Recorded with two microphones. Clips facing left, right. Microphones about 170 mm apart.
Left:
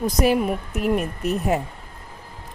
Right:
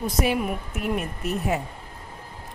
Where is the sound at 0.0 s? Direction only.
40° left (ahead or behind).